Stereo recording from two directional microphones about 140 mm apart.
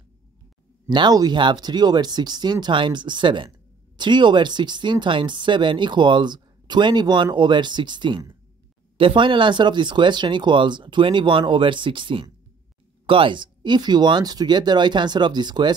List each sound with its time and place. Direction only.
0.8 s speech: 30° right (ahead or behind)